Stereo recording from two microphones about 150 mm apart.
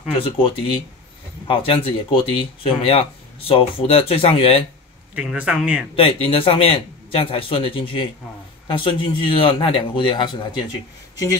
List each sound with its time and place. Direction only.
0.2 s speech: 35° left (ahead or behind)
5.1 s a man's voice: 10° right (ahead or behind)
5.9 s speech: 35° left (ahead or behind)